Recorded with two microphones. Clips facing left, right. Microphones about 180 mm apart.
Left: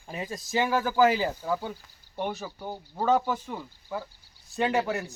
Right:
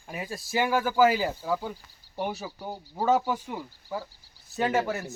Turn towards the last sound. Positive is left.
turn(degrees=0)  # may be behind; listen again after turning